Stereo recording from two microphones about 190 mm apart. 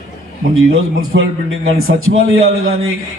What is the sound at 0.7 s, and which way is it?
A man's voice, 75° right (ahead or behind).